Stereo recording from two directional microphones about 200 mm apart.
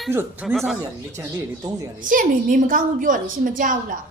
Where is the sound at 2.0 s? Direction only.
45° right (ahead or behind).